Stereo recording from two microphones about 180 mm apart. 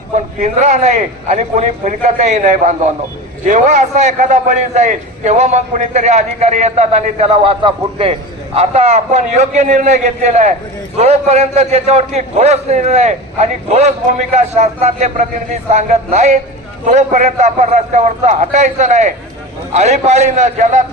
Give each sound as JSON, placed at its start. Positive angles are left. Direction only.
{"t": 0.3, "sound": "a man's voice", "side_deg": -40}